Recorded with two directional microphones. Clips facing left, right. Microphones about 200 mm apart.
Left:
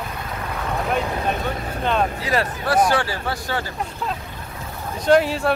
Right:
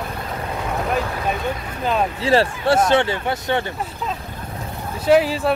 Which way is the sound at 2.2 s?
30° right (ahead or behind).